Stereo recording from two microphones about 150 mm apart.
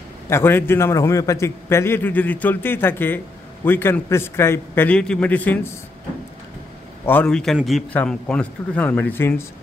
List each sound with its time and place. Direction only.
0.3 s a man's voice: 15° left (ahead or behind)
7.1 s a man's voice: 10° left (ahead or behind)